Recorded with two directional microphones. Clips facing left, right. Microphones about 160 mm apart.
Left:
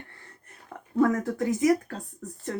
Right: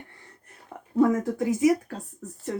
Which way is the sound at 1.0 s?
5° right (ahead or behind).